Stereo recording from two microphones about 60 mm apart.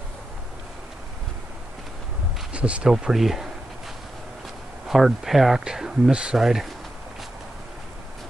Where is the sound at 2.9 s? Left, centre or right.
Centre.